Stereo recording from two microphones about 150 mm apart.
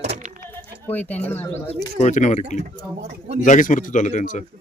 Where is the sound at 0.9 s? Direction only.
10° left (ahead or behind).